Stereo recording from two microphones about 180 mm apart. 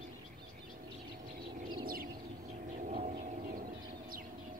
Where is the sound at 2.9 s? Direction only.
40° right (ahead or behind).